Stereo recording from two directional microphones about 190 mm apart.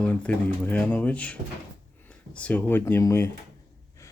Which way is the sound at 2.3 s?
5° left (ahead or behind).